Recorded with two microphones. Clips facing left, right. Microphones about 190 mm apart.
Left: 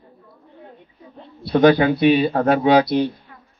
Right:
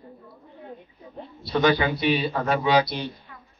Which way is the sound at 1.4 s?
60° left (ahead or behind).